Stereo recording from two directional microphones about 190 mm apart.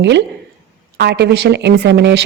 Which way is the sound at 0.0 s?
65° right (ahead or behind).